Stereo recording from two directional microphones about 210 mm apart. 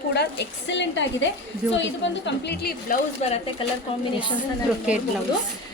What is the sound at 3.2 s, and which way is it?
Speech, 30° left (ahead or behind).